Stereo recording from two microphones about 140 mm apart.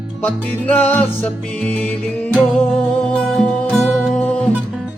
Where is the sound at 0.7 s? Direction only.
10° left (ahead or behind).